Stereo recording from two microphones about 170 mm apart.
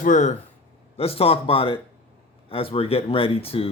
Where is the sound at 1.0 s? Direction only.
35° left (ahead or behind).